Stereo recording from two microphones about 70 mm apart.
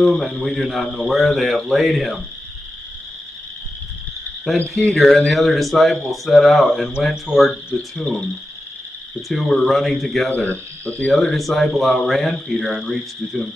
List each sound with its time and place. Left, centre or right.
0.0 s speech: centre
4.6 s speech: centre
9.3 s speech: centre